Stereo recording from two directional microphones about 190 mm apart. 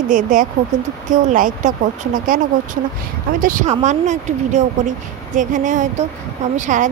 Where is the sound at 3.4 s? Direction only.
45° right (ahead or behind).